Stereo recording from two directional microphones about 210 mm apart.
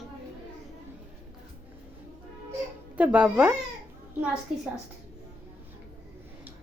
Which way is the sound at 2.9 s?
5° right (ahead or behind).